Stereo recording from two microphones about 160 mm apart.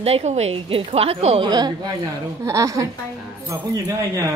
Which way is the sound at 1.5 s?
25° right (ahead or behind).